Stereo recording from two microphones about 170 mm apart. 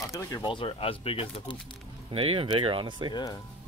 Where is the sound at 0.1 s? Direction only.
25° left (ahead or behind).